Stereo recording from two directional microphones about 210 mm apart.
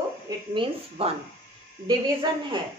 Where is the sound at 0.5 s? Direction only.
25° right (ahead or behind).